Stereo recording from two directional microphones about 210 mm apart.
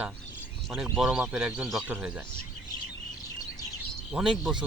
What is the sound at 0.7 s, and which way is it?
Speech, 5° right (ahead or behind).